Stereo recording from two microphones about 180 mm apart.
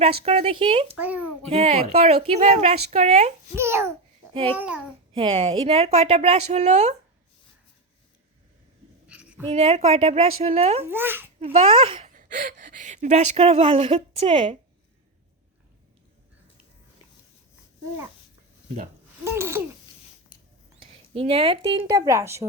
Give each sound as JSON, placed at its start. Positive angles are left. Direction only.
{"t": 0.3, "sound": "speech", "side_deg": -35}
{"t": 0.9, "sound": "speech", "side_deg": -10}
{"t": 1.5, "sound": "speech", "side_deg": -35}
{"t": 3.5, "sound": "speech", "side_deg": -15}
{"t": 5.1, "sound": "speech", "side_deg": -30}
{"t": 9.5, "sound": "speech", "side_deg": -35}
{"t": 10.8, "sound": "speech", "side_deg": -10}
{"t": 11.3, "sound": "a child's voice", "side_deg": -30}
{"t": 12.1, "sound": "speech", "side_deg": -45}
{"t": 19.2, "sound": "a sound", "side_deg": -15}
{"t": 20.7, "sound": "speech", "side_deg": -30}
{"t": 21.8, "sound": "speech", "side_deg": -20}